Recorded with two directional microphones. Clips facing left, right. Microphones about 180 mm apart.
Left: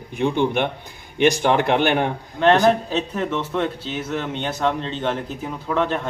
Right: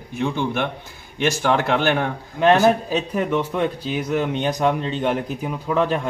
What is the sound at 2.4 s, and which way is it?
Speech, 10° right (ahead or behind).